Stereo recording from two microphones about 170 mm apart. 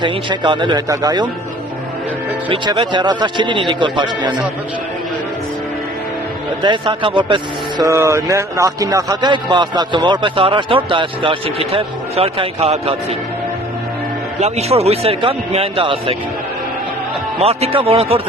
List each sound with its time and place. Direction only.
0.0 s speech: 30° right (ahead or behind)
2.5 s speech: 30° right (ahead or behind)
6.6 s speech: 30° right (ahead or behind)
14.4 s a man's voice: 35° right (ahead or behind)
17.4 s a man's voice: 35° right (ahead or behind)